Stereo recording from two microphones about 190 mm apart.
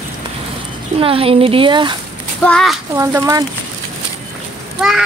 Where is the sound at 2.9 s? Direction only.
15° right (ahead or behind).